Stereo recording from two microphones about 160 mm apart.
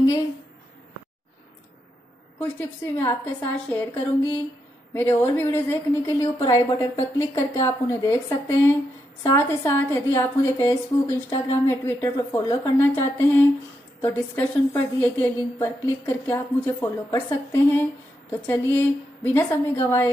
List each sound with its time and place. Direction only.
2.3 s a woman's voice: 10° left (ahead or behind)